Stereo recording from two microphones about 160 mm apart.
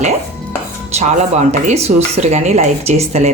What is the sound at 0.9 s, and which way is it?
Speech, 45° right (ahead or behind).